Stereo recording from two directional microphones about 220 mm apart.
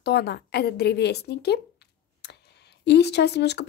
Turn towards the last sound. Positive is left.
turn(degrees=50)  # may be behind; listen again after turning